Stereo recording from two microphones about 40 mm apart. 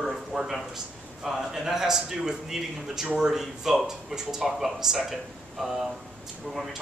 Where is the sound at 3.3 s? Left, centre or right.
Centre.